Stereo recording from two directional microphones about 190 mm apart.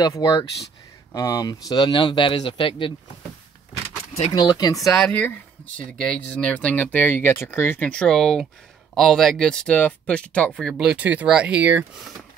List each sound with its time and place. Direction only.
0.0 s speech: 20° left (ahead or behind)
4.3 s speech: 20° left (ahead or behind)
5.0 s speech: 5° left (ahead or behind); by 11.8 s 10° right (ahead or behind)